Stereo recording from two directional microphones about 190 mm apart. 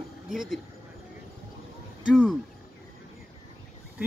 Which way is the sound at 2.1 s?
5° left (ahead or behind).